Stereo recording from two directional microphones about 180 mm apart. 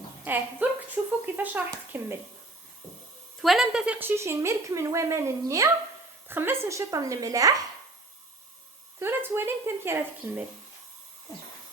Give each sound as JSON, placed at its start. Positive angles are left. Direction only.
{"t": 0.3, "sound": "a woman's voice", "side_deg": -10}
{"t": 0.6, "sound": "a sound", "side_deg": -10}
{"t": 1.2, "sound": "a woman's voice", "side_deg": -10}
{"t": 3.4, "sound": "a woman's voice", "side_deg": 0}
{"t": 9.0, "sound": "a woman's voice", "side_deg": -15}